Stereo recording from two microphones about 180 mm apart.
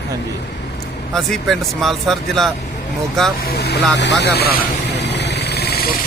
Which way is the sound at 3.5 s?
65° left (ahead or behind).